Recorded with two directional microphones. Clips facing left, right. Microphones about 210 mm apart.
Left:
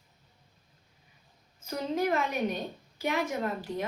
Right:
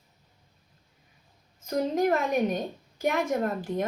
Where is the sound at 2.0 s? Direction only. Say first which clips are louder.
Right 3 dB; 45° right (ahead or behind).